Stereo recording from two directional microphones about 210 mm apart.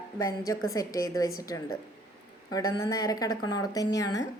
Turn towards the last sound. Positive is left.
turn(degrees=15)  # may be behind; listen again after turning